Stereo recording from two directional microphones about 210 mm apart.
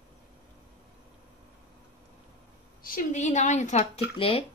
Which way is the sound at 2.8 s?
40° left (ahead or behind).